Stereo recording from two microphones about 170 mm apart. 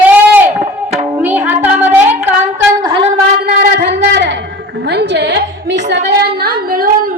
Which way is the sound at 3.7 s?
85° right.